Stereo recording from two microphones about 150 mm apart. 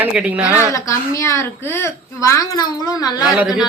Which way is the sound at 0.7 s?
20° left (ahead or behind).